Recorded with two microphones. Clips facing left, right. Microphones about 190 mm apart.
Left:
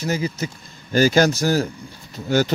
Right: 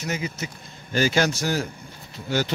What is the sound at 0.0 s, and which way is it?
A man's voice, 35° left (ahead or behind).